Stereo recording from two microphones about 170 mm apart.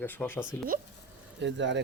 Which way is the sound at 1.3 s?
90° right.